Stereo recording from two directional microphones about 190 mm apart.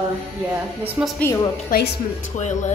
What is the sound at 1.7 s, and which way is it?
Speech, 45° left (ahead or behind).